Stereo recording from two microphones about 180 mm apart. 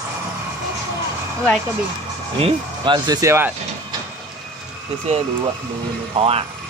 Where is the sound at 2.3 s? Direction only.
30° right (ahead or behind).